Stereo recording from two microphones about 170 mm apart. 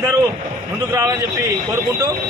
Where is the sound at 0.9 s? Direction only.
20° right (ahead or behind).